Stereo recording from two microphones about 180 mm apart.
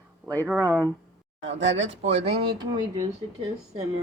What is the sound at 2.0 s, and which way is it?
Speech, 35° right (ahead or behind).